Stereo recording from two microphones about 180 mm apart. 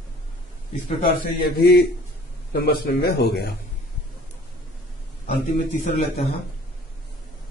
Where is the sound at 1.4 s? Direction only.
60° left (ahead or behind).